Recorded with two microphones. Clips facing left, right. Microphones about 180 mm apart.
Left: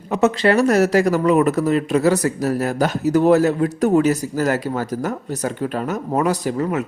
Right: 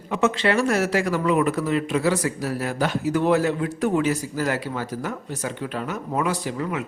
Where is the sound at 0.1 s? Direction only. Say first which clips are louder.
Left 5 dB; 40° left (ahead or behind).